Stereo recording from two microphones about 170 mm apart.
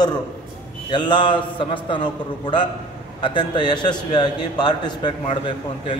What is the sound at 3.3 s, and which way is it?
A man's voice, 25° left (ahead or behind).